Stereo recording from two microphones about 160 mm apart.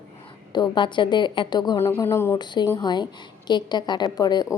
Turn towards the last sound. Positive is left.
turn(degrees=25)  # may be behind; listen again after turning